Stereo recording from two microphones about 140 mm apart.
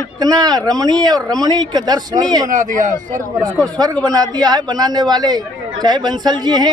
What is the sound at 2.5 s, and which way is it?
Speech, 65° right (ahead or behind).